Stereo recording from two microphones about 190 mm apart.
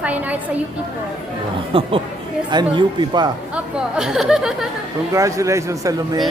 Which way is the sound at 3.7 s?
5° right (ahead or behind).